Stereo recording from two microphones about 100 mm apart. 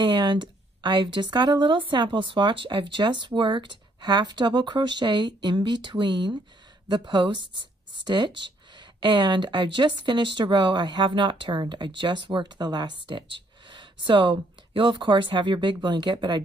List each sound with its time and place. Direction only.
0.0 s a woman's voice: 50° right (ahead or behind)